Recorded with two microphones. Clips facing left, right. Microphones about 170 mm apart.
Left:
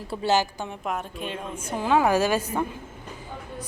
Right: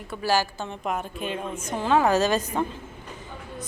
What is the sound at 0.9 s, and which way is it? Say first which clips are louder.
Speech: right 2 dB; centre (ahead or behind).